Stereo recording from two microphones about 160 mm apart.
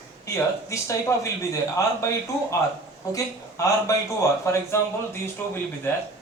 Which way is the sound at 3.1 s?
20° left (ahead or behind).